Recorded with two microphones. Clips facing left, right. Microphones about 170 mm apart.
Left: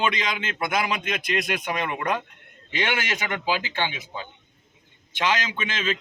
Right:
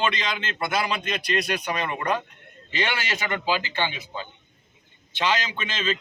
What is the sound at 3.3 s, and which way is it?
Speech, 10° left (ahead or behind).